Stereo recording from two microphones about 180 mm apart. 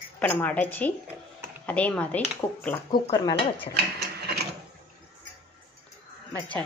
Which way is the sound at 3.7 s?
65° right (ahead or behind).